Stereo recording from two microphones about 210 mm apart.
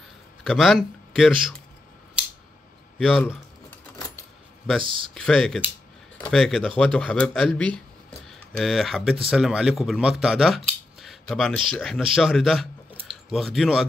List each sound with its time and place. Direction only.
0.4 s a man's voice: centre (ahead or behind)
3.0 s speech: centre (ahead or behind)
4.8 s speech: 25° right (ahead or behind)
5.1 s speech: 5° left (ahead or behind)